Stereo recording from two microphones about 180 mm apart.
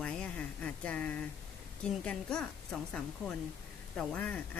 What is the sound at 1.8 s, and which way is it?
A woman's voice, 5° left (ahead or behind).